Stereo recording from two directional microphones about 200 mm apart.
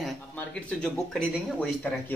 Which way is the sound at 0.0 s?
5° left (ahead or behind).